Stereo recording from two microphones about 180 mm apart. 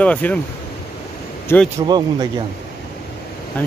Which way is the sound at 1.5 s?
10° left (ahead or behind).